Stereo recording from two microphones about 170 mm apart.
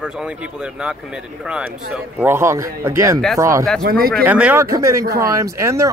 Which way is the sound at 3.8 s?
60° right (ahead or behind).